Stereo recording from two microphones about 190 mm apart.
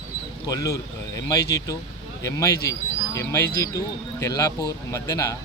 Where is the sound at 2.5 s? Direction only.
55° left (ahead or behind).